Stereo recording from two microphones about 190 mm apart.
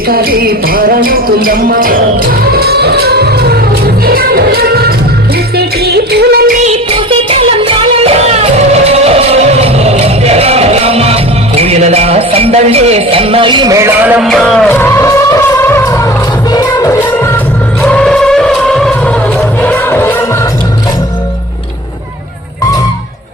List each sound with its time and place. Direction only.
0.1 s music: 50° right (ahead or behind)
6.6 s music: 30° right (ahead or behind); by 20.2 s 10° left (ahead or behind)